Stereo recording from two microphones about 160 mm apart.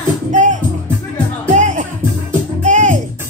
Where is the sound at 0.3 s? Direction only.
50° right (ahead or behind).